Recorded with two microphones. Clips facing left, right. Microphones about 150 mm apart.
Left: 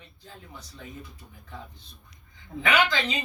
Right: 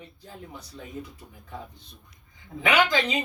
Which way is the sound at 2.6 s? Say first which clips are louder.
Right 2 dB; 15° right (ahead or behind).